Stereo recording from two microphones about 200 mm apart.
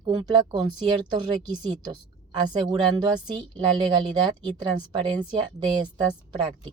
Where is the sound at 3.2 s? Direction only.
25° right (ahead or behind).